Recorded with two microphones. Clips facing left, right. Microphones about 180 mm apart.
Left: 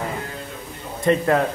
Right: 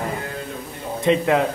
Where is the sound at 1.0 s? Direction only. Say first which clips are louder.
Even; centre (ahead or behind).